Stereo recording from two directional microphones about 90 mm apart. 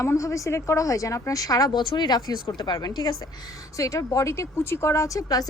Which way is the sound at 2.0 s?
50° left (ahead or behind).